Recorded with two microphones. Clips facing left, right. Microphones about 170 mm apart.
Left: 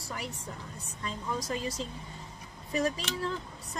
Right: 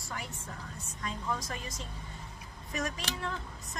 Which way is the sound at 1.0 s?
30° left (ahead or behind).